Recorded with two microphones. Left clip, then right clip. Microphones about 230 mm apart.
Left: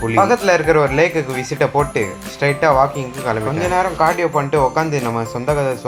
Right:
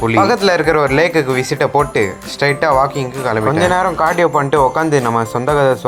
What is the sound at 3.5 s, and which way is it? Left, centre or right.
A man's voice, right.